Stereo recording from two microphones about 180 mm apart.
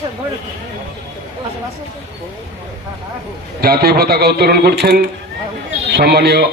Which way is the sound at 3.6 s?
60° right (ahead or behind).